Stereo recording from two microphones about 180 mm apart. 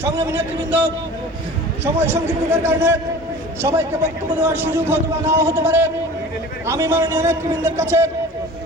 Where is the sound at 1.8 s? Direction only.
10° right (ahead or behind).